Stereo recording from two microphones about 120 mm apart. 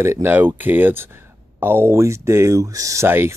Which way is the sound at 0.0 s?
20° right (ahead or behind).